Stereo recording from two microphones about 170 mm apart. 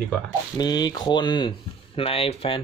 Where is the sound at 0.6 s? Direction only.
25° left (ahead or behind).